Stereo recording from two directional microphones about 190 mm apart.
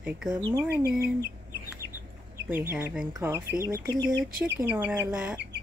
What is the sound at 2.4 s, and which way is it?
Speech, 10° right (ahead or behind).